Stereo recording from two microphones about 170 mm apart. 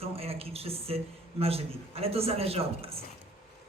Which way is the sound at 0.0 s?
35° right (ahead or behind).